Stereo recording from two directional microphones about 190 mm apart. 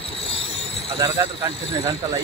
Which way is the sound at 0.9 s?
20° right (ahead or behind).